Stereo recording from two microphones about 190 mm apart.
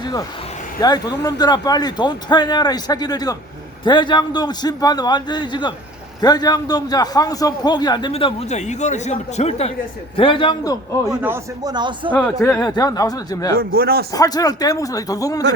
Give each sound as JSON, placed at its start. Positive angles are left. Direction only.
{"t": 0.0, "sound": "vehicle", "side_deg": 20}
{"t": 0.8, "sound": "a man's voice", "side_deg": 20}
{"t": 8.1, "sound": "a man's voice", "side_deg": 35}
{"t": 11.1, "sound": "a man's voice", "side_deg": -10}
{"t": 11.6, "sound": "speech", "side_deg": -20}
{"t": 12.1, "sound": "a man's voice", "side_deg": 10}
{"t": 13.6, "sound": "a man's voice", "side_deg": -50}
{"t": 14.1, "sound": "a man's voice", "side_deg": 20}